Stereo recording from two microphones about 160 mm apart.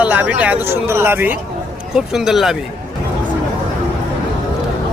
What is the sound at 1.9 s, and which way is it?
Speech, 5° right (ahead or behind).